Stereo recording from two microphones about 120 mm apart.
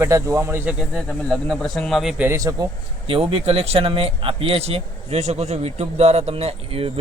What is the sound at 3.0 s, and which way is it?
A man's voice, 50° right (ahead or behind).